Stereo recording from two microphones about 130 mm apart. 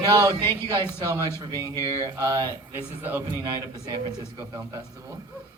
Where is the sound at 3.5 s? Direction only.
35° right (ahead or behind).